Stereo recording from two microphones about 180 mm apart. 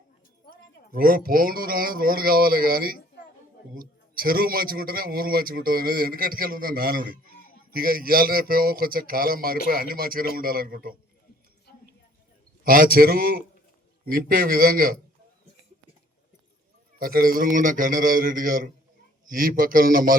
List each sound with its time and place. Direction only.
0.9 s a man's voice: 55° right (ahead or behind)
11.7 s a sound: 60° left (ahead or behind)
12.6 s a man's voice: 50° right (ahead or behind)
17.0 s speech: 55° right (ahead or behind)